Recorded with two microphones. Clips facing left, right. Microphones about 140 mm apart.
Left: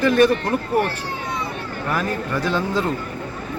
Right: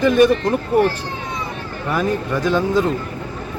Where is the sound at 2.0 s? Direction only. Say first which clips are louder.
Right 6 dB; 15° right (ahead or behind).